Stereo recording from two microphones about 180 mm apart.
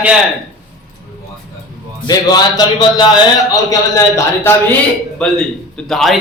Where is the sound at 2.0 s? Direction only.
20° left (ahead or behind).